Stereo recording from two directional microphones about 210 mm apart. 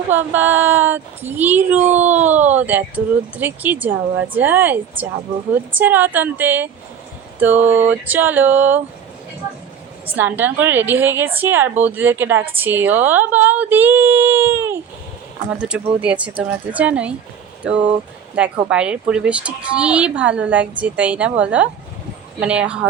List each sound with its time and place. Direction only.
0.1 s speech: 10° right (ahead or behind)
7.3 s a sound: 10° right (ahead or behind)
7.8 s speech: 10° right (ahead or behind)
10.1 s speech: 10° right (ahead or behind)